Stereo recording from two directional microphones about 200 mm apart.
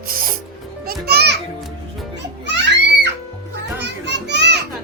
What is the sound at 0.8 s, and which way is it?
Children playing, 50° right (ahead or behind).